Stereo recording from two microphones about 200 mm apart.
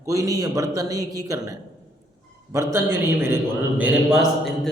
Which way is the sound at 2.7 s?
15° right (ahead or behind).